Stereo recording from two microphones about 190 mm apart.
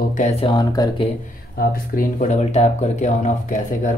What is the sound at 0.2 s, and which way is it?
Speech, 25° left (ahead or behind).